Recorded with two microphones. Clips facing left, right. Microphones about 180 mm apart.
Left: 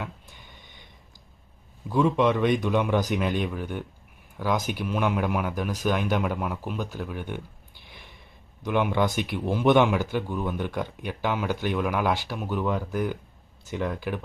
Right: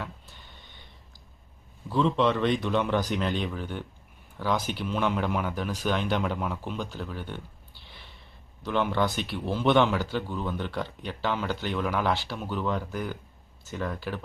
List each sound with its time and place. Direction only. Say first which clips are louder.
0.0 s a sound: left 2 dB; 15° left (ahead or behind)
1.9 s speech: left 2 dB; 10° left (ahead or behind)
8.6 s speech: left 2 dB; 15° left (ahead or behind)